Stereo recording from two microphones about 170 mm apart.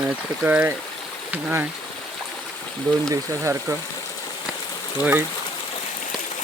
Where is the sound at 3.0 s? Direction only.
15° right (ahead or behind).